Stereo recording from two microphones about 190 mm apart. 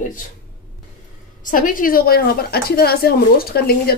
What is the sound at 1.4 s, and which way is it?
A woman's voice, 45° left (ahead or behind).